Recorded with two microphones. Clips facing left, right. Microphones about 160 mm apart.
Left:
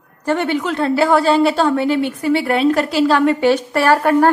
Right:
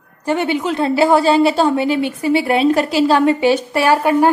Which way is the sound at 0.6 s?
20° right (ahead or behind).